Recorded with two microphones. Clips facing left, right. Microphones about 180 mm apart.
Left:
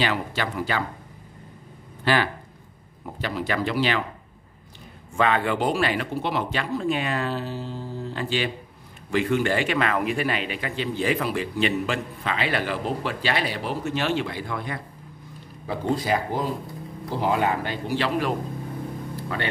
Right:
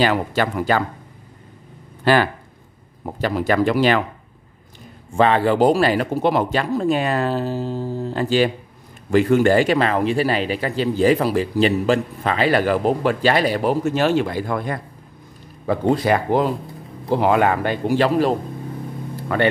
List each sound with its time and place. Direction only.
0.0 s speech: 45° right (ahead or behind)
2.1 s speech: 45° right (ahead or behind)
5.1 s speech: 35° right (ahead or behind)
15.6 s speech: 60° right (ahead or behind); by 18.3 s 40° right (ahead or behind)
19.3 s speech: 55° right (ahead or behind)